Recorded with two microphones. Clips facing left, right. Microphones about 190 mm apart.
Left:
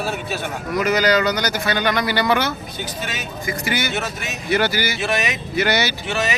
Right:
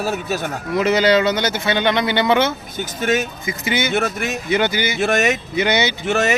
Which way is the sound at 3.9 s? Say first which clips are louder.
Right 6 dB; 50° right (ahead or behind).